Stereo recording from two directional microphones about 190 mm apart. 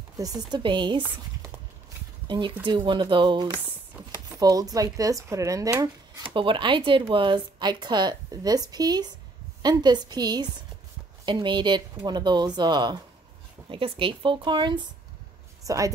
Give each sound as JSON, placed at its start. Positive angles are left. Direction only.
{"t": 0.2, "sound": "speech", "side_deg": -20}
{"t": 2.2, "sound": "speech", "side_deg": -25}